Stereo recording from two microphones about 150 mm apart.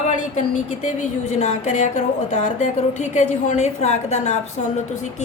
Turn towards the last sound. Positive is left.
turn(degrees=50)  # may be behind; listen again after turning